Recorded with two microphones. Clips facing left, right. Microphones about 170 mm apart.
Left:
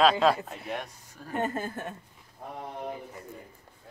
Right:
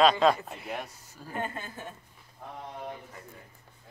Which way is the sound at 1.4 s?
40° left (ahead or behind).